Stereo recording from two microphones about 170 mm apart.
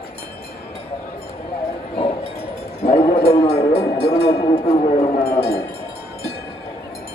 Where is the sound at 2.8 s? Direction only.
35° left (ahead or behind).